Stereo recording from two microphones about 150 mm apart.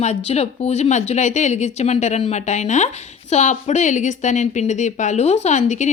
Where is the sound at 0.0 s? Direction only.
45° left (ahead or behind).